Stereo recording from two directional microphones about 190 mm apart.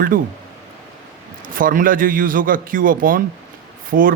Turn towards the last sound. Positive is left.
turn(degrees=-45)  # may be behind; listen again after turning